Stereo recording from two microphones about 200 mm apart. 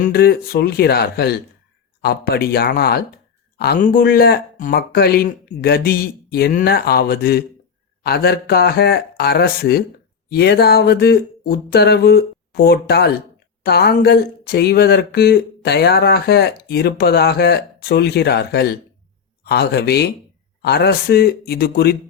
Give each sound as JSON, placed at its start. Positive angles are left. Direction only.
{"t": 0.0, "sound": "speech", "side_deg": 50}